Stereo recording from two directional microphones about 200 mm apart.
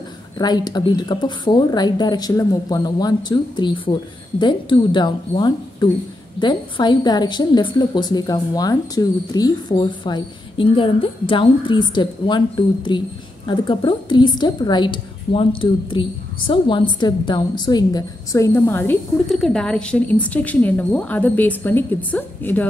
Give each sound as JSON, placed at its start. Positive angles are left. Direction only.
{"t": 0.4, "sound": "a woman's voice", "side_deg": 20}